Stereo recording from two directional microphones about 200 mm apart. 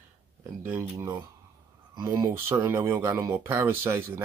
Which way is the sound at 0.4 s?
10° right (ahead or behind).